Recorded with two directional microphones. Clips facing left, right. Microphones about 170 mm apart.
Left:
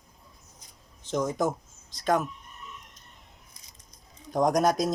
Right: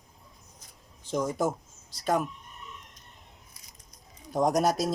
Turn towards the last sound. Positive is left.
turn(degrees=-5)  # may be behind; listen again after turning